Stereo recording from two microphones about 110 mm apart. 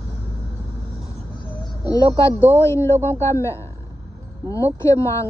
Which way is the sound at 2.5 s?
25° left (ahead or behind).